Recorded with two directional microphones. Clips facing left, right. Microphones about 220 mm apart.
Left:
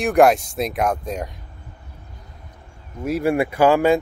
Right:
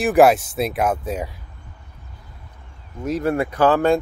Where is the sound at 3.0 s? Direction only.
10° left (ahead or behind).